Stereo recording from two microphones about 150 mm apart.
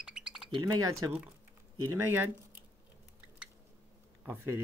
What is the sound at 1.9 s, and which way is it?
Speech, 15° right (ahead or behind).